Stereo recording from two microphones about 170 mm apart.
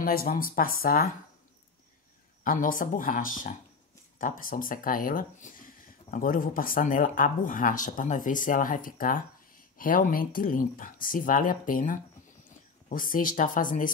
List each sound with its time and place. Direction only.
0.0 s speech: 60° left (ahead or behind)
2.4 s speech: 55° left (ahead or behind)